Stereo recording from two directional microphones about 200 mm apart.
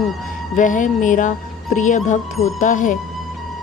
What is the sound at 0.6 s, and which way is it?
Speech, 40° left (ahead or behind).